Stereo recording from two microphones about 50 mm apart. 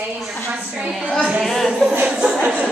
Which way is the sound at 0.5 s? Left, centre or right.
Centre.